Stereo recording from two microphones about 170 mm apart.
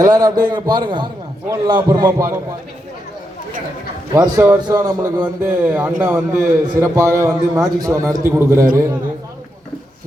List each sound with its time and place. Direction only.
0.0 s a man's voice: 20° right (ahead or behind)
4.1 s a man's voice: 20° right (ahead or behind)